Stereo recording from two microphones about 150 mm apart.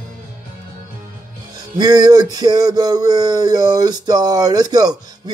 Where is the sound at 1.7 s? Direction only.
25° right (ahead or behind).